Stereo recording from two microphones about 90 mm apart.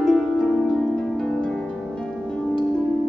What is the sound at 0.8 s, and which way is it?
Harp, 5° left (ahead or behind).